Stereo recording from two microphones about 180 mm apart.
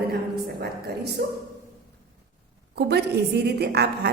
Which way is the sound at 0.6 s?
65° right (ahead or behind).